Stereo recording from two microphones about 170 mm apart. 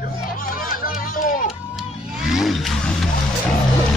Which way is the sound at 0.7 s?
55° left (ahead or behind).